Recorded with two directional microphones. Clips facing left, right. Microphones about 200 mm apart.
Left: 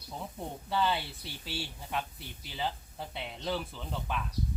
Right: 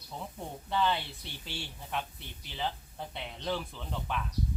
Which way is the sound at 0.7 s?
5° left (ahead or behind).